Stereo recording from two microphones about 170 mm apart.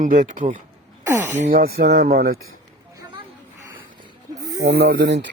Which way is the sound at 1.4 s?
55° right (ahead or behind).